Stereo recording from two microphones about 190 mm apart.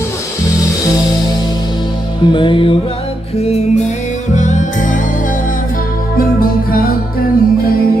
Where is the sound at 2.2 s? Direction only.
25° left (ahead or behind); by 6.9 s 50° left (ahead or behind).